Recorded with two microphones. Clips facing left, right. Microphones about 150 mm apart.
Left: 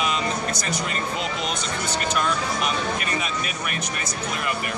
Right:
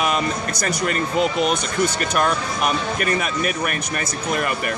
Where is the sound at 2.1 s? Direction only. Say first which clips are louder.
Right 4 dB; 55° right (ahead or behind).